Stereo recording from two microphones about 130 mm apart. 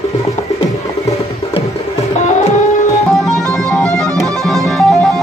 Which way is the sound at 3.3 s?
5° left (ahead or behind).